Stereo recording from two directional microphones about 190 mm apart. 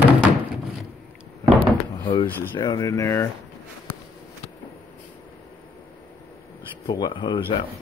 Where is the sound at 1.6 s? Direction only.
30° left (ahead or behind).